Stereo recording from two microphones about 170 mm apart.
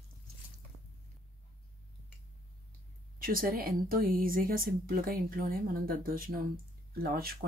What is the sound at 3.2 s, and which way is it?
Speech, 55° right (ahead or behind).